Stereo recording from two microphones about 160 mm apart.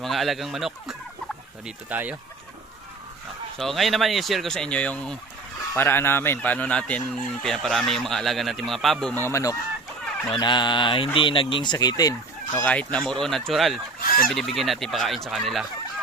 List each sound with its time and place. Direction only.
0.0 s fowl: centre (ahead or behind)
3.6 s speech: centre (ahead or behind)
9.2 s speech: 20° left (ahead or behind)
12.5 s speech: 10° left (ahead or behind)